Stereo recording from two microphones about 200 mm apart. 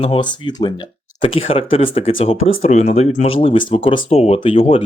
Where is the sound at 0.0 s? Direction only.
25° left (ahead or behind).